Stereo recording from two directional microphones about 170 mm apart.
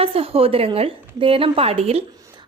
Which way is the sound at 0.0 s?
35° right (ahead or behind).